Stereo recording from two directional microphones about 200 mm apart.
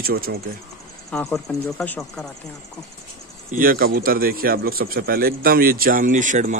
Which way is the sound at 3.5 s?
45° right (ahead or behind).